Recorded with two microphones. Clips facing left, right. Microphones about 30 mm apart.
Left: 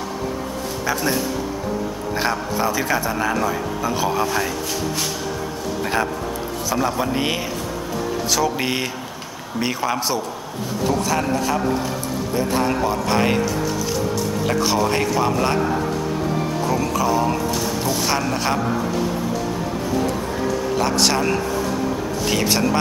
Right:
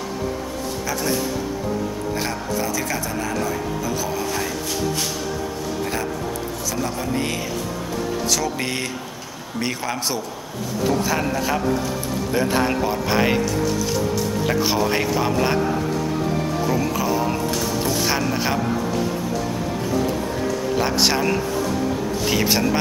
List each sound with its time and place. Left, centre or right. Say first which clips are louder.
2.1 s a man's voice: left 6 dB; left
3.9 s a man's voice: left 7 dB; left
6.7 s a man's voice: left 5 dB; left
8.3 s a man's voice: left 5 dB; centre
14.4 s a man's voice: left 2 dB; centre
16.6 s a man's voice: left 2 dB; centre
20.7 s a man's voice: even; centre